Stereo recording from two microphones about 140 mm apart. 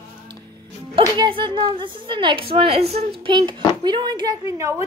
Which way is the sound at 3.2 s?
35° right (ahead or behind).